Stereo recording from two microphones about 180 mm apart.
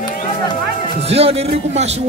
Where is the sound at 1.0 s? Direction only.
35° right (ahead or behind).